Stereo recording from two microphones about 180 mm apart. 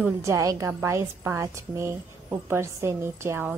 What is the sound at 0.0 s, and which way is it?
A woman's voice, 15° right (ahead or behind).